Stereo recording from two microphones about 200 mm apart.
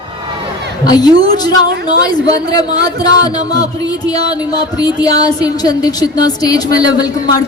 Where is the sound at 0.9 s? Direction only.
20° left (ahead or behind).